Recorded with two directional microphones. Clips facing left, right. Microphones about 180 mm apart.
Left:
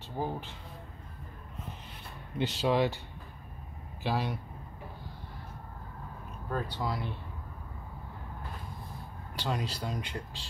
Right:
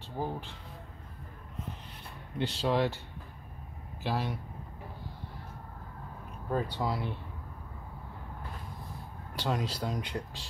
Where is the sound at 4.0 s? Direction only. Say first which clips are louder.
Left 1 dB; 5° left (ahead or behind).